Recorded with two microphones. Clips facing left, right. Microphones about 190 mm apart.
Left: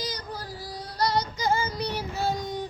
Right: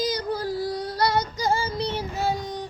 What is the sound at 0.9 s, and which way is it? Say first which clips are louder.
Female singing: right 1 dB; 60° right (ahead or behind).